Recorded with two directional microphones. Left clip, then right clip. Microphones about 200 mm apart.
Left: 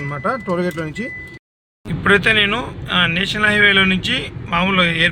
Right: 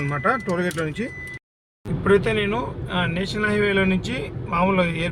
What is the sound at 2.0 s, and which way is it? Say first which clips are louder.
Speech: left 6 dB; 5° right (ahead or behind).